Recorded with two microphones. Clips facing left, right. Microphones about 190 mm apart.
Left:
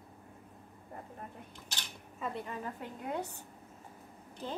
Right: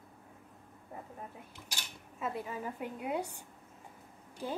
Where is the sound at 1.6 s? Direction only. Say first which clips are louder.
Left 1 dB; 5° right (ahead or behind).